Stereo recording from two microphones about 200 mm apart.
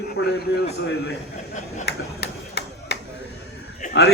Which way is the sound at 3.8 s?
40° left (ahead or behind).